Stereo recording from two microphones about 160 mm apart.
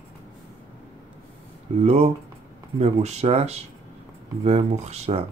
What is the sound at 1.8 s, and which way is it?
Speech, 40° right (ahead or behind).